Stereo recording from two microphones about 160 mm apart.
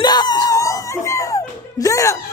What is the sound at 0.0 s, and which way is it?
Music, 25° left (ahead or behind).